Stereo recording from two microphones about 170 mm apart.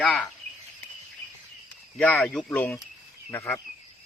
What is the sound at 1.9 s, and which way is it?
Speech, centre (ahead or behind).